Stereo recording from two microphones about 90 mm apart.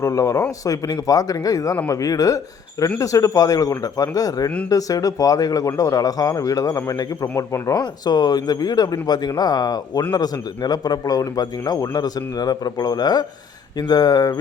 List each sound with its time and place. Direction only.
0.0 s a man's voice: 35° left (ahead or behind)